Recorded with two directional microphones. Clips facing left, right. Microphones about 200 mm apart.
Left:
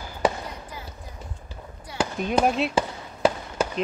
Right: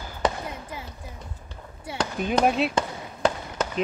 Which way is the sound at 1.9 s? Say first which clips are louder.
Left 1 dB; 5° left (ahead or behind).